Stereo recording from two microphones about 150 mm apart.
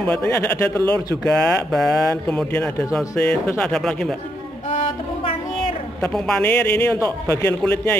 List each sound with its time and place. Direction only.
0.0 s a man's voice: 10° left (ahead or behind)
4.6 s a sound: 40° left (ahead or behind)
6.1 s a man's voice: 5° left (ahead or behind)